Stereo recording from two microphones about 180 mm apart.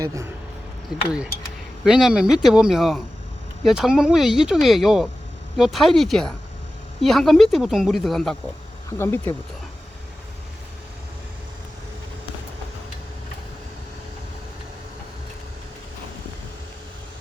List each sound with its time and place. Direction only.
0.0 s speech: 20° right (ahead or behind)
0.9 s speech: 5° right (ahead or behind)
8.9 s speech: 15° left (ahead or behind)